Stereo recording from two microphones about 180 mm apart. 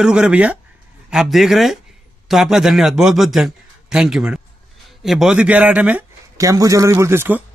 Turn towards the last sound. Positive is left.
turn(degrees=-15)  # may be behind; listen again after turning